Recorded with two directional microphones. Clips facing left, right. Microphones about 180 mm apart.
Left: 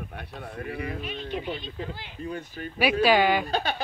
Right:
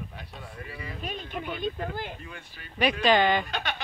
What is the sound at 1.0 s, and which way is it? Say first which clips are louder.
Speech: left 3 dB; 45° right (ahead or behind).